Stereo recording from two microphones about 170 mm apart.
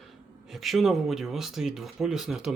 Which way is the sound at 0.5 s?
Centre (ahead or behind).